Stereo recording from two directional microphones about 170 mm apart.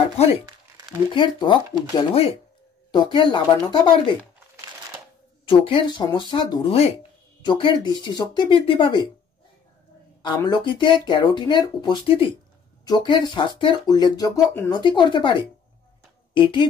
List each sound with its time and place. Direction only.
1.1 s speech: 30° left (ahead or behind)
5.4 s speech: 30° left (ahead or behind)
10.2 s speech: 25° left (ahead or behind)
14.7 s speech: 25° left (ahead or behind)
16.3 s speech: 30° left (ahead or behind)